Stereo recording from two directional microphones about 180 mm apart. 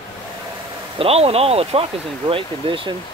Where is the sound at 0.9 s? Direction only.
35° right (ahead or behind).